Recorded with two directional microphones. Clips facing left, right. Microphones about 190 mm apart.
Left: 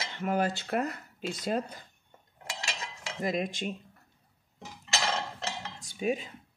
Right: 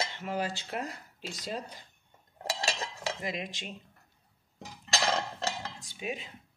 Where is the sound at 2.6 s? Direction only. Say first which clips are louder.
Right 5 dB; 35° right (ahead or behind).